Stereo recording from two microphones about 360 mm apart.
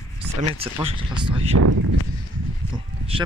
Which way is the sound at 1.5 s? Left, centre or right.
Right.